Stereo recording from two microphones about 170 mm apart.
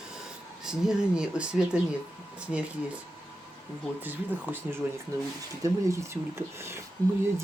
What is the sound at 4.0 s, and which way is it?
Speech, 10° right (ahead or behind).